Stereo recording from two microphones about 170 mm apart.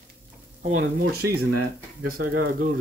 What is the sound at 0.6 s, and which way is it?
Speech, 55° right (ahead or behind).